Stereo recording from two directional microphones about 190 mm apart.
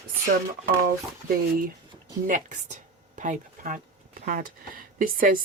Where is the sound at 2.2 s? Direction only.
40° right (ahead or behind).